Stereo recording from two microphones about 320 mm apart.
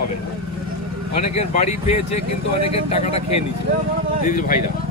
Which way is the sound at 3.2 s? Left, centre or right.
Left.